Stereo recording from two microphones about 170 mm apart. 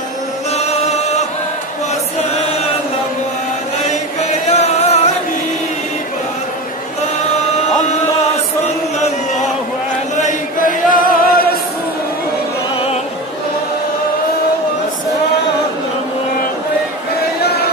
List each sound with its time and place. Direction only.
0.6 s chant: 40° left (ahead or behind)
4.5 s music: 40° left (ahead or behind)
10.1 s a sound: 50° left (ahead or behind)